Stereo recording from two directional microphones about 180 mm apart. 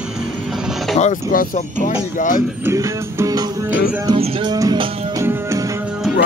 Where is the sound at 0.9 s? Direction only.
45° left (ahead or behind).